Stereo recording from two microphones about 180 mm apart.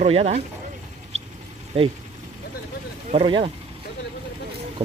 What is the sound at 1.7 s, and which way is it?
Speech, 35° right (ahead or behind).